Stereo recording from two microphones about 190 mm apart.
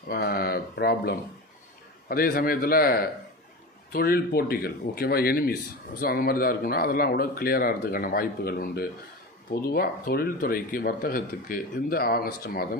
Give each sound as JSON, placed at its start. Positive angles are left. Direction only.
{"t": 0.1, "sound": "speech", "side_deg": 50}